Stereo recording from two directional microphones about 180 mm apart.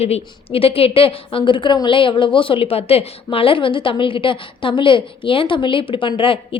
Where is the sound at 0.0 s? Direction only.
35° left (ahead or behind).